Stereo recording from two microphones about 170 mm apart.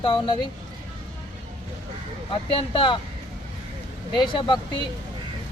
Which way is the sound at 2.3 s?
30° left (ahead or behind).